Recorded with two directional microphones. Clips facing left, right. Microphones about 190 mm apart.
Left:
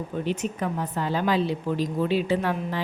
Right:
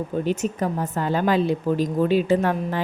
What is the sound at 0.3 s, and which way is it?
A woman's voice, 40° right (ahead or behind).